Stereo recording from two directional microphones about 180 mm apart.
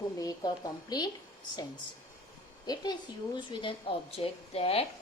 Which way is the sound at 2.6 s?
20° left (ahead or behind).